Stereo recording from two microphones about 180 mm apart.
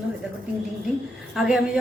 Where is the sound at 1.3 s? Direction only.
Centre (ahead or behind).